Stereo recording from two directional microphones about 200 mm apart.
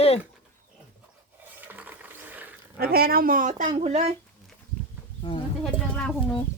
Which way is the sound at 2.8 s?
50° right (ahead or behind).